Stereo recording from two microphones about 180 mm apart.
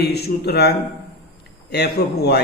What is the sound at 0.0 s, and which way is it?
Speech, 60° left (ahead or behind).